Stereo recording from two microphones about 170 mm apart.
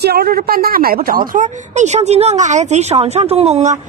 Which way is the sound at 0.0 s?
65° right (ahead or behind).